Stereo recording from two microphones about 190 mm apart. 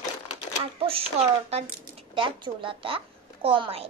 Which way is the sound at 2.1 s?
25° right (ahead or behind).